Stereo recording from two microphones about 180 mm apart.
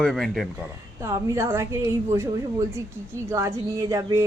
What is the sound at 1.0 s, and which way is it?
A woman's voice, 15° right (ahead or behind).